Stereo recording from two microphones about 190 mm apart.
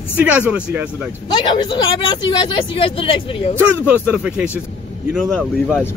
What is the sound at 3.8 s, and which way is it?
Speech, 5° right (ahead or behind).